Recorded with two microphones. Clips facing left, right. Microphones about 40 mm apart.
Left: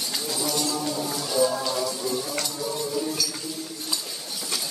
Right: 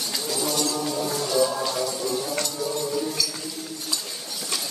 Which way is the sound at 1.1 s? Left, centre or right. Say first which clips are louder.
Even; centre.